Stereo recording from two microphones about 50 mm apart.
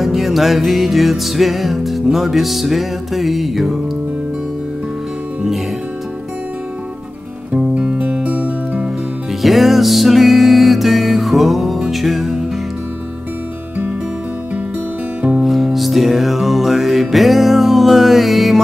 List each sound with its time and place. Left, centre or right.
0.0 s music: centre
7.5 s music: centre
8.0 s music: right
9.4 s music: centre
15.4 s music: centre